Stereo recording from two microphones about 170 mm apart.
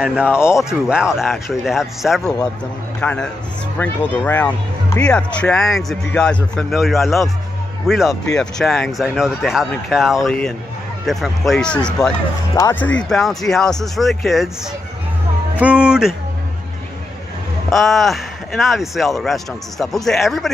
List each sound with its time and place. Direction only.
0.0 s a man's voice: 5° right (ahead or behind)
17.6 s speech: centre (ahead or behind)